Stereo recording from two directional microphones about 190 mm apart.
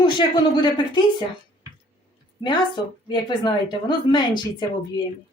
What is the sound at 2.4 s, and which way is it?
A woman's voice, 25° left (ahead or behind).